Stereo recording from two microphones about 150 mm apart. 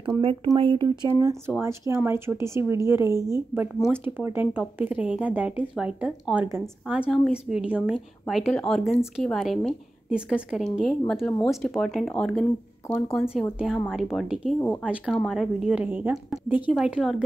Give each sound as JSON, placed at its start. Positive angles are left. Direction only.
{"t": 0.6, "sound": "speech", "side_deg": -35}